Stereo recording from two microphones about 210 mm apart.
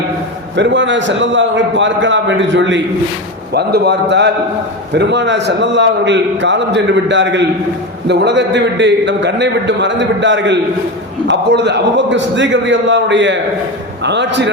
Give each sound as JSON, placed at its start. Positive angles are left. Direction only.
{"t": 0.5, "sound": "a man's voice", "side_deg": -60}
{"t": 3.5, "sound": "a man's voice", "side_deg": -50}
{"t": 4.9, "sound": "a man's voice", "side_deg": -55}